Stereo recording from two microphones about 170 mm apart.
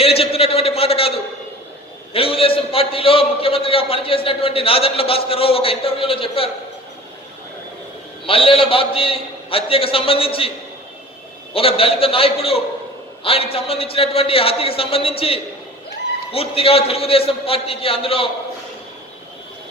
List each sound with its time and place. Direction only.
0.0 s a sound: 35° left (ahead or behind)
2.1 s a man's voice: 35° left (ahead or behind)
8.3 s a man's voice: 35° left (ahead or behind)
11.5 s a man's voice: 35° left (ahead or behind)